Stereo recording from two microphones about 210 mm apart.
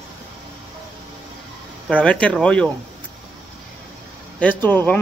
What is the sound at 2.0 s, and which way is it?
Speech, 5° left (ahead or behind).